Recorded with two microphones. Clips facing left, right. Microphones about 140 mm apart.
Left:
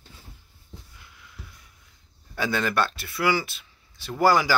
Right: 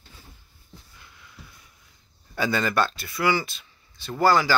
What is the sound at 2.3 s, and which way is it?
Speech, centre (ahead or behind).